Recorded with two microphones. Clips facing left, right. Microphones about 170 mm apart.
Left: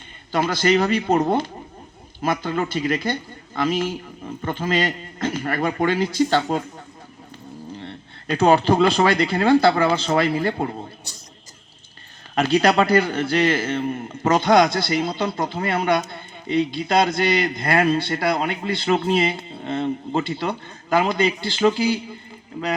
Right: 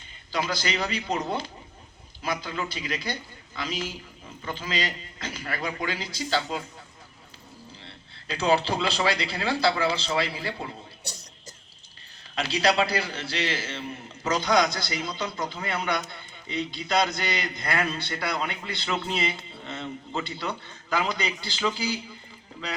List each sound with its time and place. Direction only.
0.3 s a man's voice: 50° left (ahead or behind)
7.8 s a man's voice: 50° left (ahead or behind)
12.3 s a man's voice: 55° left (ahead or behind)